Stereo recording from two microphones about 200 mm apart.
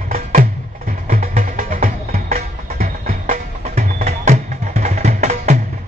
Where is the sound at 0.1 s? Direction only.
40° right (ahead or behind).